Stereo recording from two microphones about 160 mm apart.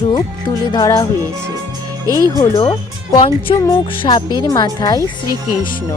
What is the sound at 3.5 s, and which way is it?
Speech, 35° left (ahead or behind).